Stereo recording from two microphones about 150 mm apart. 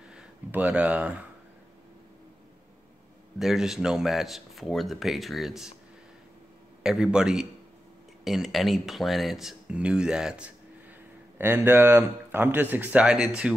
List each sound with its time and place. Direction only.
0.1 s a sound: 10° right (ahead or behind)
3.3 s speech: centre (ahead or behind)
6.8 s speech: 5° right (ahead or behind)